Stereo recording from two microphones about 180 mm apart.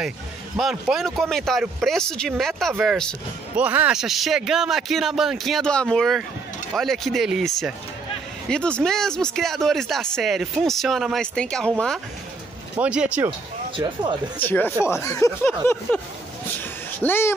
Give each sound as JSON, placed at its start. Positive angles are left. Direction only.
{"t": 0.6, "sound": "speech", "side_deg": 0}
{"t": 12.7, "sound": "speech", "side_deg": -5}
{"t": 13.7, "sound": "speech", "side_deg": -25}
{"t": 14.4, "sound": "speech", "side_deg": 10}
{"t": 17.0, "sound": "speech", "side_deg": 10}